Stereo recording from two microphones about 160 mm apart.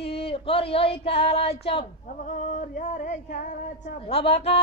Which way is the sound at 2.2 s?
50° left (ahead or behind).